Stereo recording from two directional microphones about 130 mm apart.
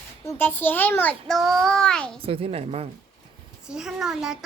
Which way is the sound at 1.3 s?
Centre (ahead or behind).